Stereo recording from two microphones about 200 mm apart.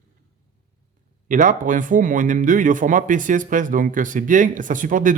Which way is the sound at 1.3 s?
40° right (ahead or behind).